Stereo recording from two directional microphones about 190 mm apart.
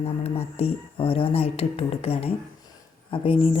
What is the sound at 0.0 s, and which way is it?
A woman's voice, 30° left (ahead or behind).